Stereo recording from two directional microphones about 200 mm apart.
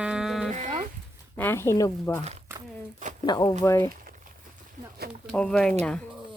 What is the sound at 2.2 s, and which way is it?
Speech, 35° right (ahead or behind).